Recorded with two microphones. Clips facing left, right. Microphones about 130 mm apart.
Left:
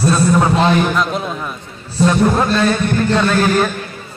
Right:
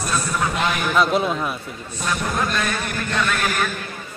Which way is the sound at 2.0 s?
30° left (ahead or behind).